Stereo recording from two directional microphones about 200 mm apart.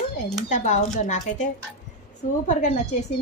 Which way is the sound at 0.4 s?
35° left (ahead or behind).